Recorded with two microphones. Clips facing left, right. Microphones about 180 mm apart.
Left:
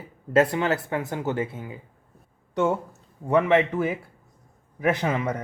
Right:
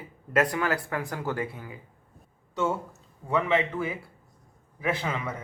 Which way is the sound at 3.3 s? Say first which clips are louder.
Left 6 dB; 50° left (ahead or behind).